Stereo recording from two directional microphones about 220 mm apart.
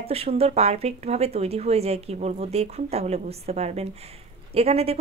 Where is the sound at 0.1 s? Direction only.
25° right (ahead or behind).